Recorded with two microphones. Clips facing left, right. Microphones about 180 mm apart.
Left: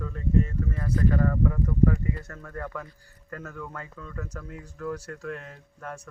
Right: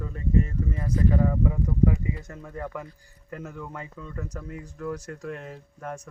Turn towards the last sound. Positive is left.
turn(degrees=-10)  # may be behind; listen again after turning